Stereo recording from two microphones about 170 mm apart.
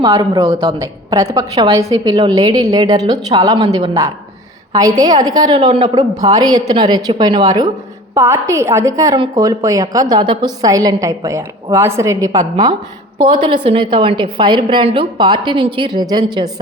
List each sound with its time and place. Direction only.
0.0 s a woman's voice: 25° right (ahead or behind)